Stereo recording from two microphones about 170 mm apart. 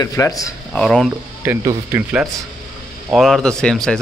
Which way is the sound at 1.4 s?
15° right (ahead or behind).